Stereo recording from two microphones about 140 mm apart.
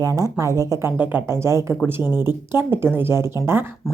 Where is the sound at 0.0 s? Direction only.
25° right (ahead or behind).